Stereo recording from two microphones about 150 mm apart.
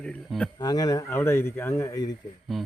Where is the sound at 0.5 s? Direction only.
25° left (ahead or behind).